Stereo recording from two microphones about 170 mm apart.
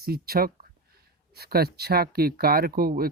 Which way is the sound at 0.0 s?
65° right (ahead or behind).